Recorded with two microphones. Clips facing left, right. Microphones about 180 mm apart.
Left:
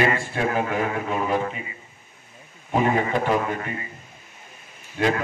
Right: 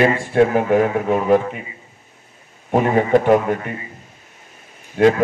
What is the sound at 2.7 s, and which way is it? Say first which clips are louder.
Speech: right 7 dB; 50° right (ahead or behind).